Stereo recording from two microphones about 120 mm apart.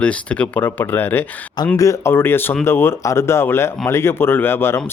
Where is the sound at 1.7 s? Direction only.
25° left (ahead or behind).